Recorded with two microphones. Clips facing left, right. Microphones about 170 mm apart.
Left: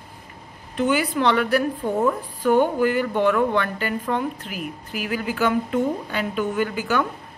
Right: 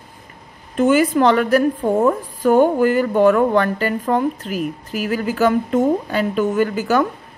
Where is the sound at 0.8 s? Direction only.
45° right (ahead or behind).